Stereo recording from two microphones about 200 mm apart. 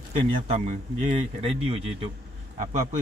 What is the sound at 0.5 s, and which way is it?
Speech, 35° right (ahead or behind).